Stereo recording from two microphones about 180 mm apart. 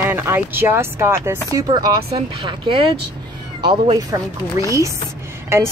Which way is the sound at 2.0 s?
30° right (ahead or behind).